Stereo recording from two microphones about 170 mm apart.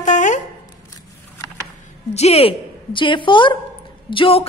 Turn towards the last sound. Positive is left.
turn(degrees=30)  # may be behind; listen again after turning